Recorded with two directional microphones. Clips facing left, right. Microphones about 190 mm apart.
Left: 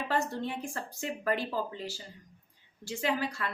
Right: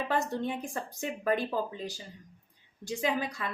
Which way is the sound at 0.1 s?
20° right (ahead or behind).